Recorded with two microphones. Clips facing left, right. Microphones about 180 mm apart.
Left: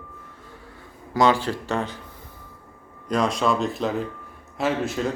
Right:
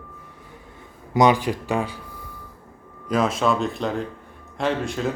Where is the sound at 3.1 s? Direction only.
5° right (ahead or behind).